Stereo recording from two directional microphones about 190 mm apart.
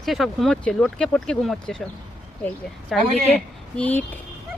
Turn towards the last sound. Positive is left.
turn(degrees=10)  # may be behind; listen again after turning